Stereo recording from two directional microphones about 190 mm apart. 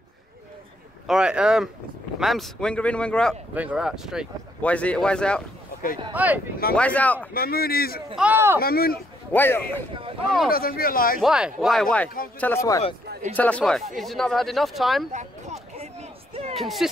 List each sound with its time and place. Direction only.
1.0 s speech: 5° right (ahead or behind)
3.5 s speech: 5° right (ahead or behind)
6.1 s speech: 10° right (ahead or behind)
6.7 s a man's voice: 5° left (ahead or behind)
7.3 s speech: 50° left (ahead or behind)
8.2 s speech: 10° right (ahead or behind)
8.5 s speech: 50° left (ahead or behind)
9.3 s a man's voice: 10° left (ahead or behind)
10.5 s speech: 50° left (ahead or behind)
11.1 s a man's voice: 5° right (ahead or behind)
15.1 s a sound: 35° right (ahead or behind)
16.5 s speech: centre (ahead or behind)